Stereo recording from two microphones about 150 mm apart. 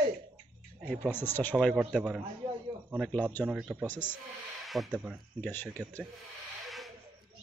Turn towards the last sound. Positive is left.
turn(degrees=0)  # may be behind; listen again after turning